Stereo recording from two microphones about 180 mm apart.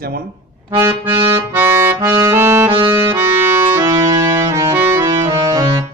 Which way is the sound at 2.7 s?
25° right (ahead or behind).